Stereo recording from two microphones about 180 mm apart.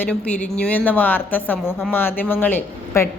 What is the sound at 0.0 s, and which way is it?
Speech, 5° left (ahead or behind).